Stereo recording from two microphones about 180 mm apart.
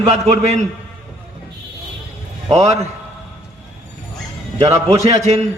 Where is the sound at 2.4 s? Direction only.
35° right (ahead or behind).